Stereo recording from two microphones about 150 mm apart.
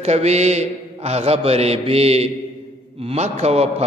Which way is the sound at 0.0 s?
45° right (ahead or behind).